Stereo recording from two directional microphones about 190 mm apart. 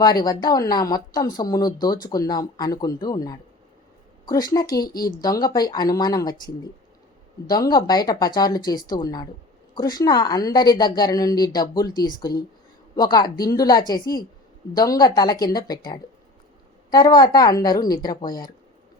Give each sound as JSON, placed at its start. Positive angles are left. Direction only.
{"t": 0.0, "sound": "a woman's voice", "side_deg": 20}
{"t": 7.4, "sound": "a woman's voice", "side_deg": 20}